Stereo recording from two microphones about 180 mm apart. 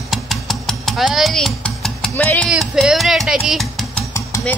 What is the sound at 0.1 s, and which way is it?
Stir, centre (ahead or behind).